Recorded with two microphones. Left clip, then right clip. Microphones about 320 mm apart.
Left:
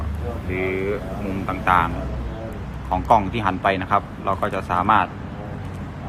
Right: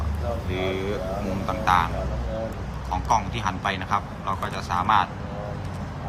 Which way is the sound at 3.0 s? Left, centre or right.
Centre.